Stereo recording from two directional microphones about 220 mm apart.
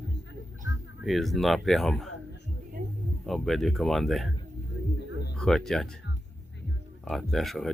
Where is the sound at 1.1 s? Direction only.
Centre (ahead or behind).